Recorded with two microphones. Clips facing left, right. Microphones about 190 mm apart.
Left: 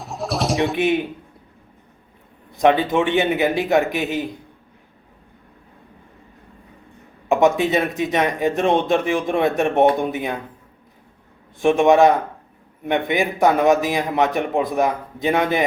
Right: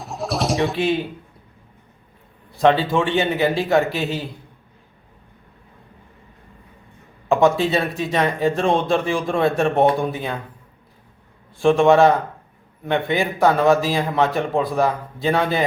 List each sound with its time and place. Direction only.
0.0 s pigeon: centre (ahead or behind)
0.8 s speech: 15° left (ahead or behind)
2.5 s speech: 15° left (ahead or behind)
7.3 s speech: 15° left (ahead or behind)
11.6 s speech: 15° left (ahead or behind)